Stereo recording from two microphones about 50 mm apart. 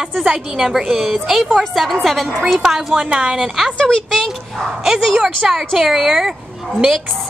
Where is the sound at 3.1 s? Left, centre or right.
Centre.